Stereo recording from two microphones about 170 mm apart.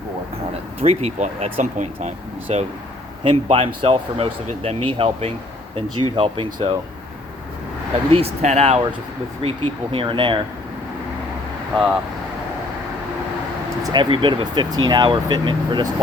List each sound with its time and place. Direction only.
0.8 s speech: 40° right (ahead or behind)
8.1 s speech: 40° right (ahead or behind)
13.8 s speech: 30° right (ahead or behind)